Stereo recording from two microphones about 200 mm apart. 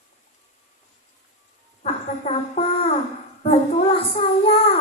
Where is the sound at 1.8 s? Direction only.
30° left (ahead or behind).